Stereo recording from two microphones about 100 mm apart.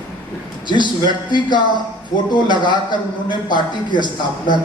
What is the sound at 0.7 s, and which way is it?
A man's voice, 50° left (ahead or behind).